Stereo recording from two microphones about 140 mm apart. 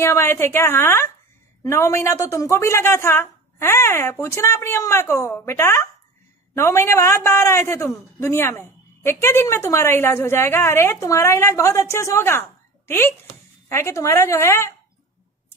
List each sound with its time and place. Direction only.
0.0 s a woman's voice: 20° left (ahead or behind)